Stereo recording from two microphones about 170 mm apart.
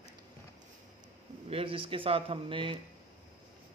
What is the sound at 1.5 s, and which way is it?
Speech, 35° right (ahead or behind).